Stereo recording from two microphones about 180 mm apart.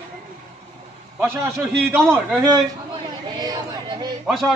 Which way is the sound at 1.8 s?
10° right (ahead or behind).